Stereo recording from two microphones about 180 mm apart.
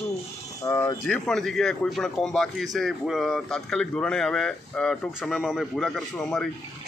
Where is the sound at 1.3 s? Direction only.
Centre (ahead or behind).